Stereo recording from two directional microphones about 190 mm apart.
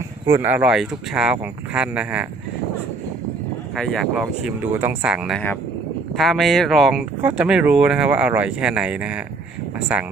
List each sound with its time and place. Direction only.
0.3 s speech: 15° right (ahead or behind)
3.8 s speech: centre (ahead or behind)